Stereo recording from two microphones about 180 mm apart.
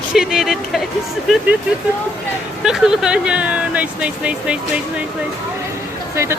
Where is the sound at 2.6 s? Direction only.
5° right (ahead or behind).